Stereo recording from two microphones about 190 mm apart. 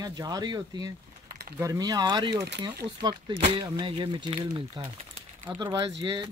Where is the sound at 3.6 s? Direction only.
20° right (ahead or behind).